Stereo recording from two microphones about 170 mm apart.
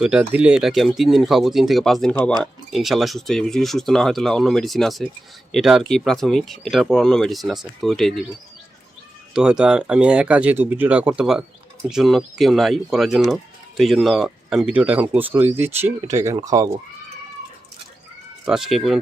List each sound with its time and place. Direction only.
0.0 s speech: 5° right (ahead or behind)
9.3 s speech: 5° right (ahead or behind); by 16.6 s 20° right (ahead or behind)
18.4 s speech: 5° right (ahead or behind)